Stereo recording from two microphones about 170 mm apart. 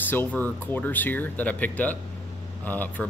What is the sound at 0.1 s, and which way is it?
Speech, 10° left (ahead or behind).